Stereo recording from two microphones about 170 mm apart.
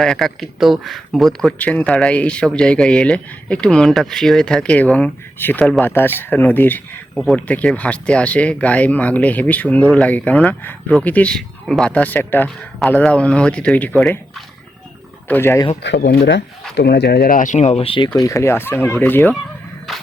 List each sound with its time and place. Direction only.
0.0 s speech: centre (ahead or behind)
15.3 s speech: 15° left (ahead or behind)
15.8 s speech: 85° left; by 18.1 s 30° left (ahead or behind)
18.2 s speech: 20° left (ahead or behind)